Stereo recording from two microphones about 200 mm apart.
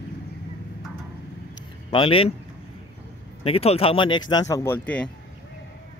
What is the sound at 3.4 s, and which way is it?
Speech, 30° left (ahead or behind).